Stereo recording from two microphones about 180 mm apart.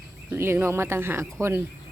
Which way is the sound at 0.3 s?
15° right (ahead or behind).